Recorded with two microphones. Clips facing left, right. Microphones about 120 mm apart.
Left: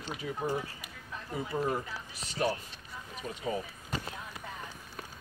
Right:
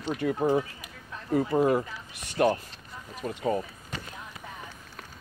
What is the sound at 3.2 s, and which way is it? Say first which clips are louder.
Speech: right 7 dB; 55° right (ahead or behind).